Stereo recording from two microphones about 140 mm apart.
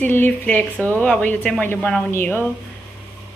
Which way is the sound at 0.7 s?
15° right (ahead or behind).